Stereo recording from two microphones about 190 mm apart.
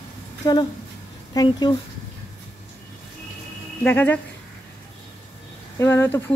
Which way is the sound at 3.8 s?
10° left (ahead or behind).